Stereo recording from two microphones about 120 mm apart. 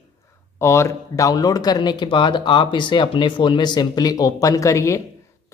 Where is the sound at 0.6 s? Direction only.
25° left (ahead or behind).